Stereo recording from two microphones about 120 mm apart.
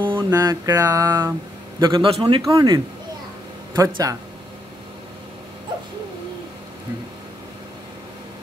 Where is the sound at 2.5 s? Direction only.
30° right (ahead or behind).